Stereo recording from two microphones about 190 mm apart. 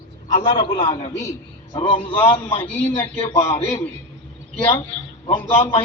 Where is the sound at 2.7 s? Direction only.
10° left (ahead or behind).